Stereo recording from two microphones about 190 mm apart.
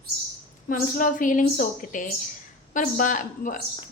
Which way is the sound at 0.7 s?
45° left (ahead or behind).